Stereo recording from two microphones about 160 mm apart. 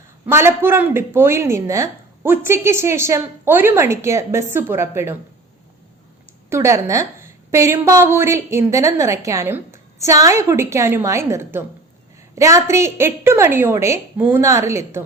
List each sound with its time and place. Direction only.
0.3 s a woman's voice: 15° right (ahead or behind)
6.5 s a woman's voice: 20° right (ahead or behind)